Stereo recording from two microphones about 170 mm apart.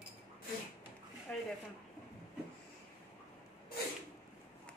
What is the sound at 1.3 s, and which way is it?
Speech, 5° left (ahead or behind).